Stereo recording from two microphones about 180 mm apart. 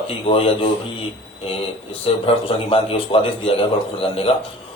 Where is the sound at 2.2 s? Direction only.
30° left (ahead or behind).